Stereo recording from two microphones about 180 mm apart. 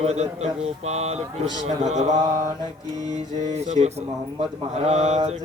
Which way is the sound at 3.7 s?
40° right (ahead or behind).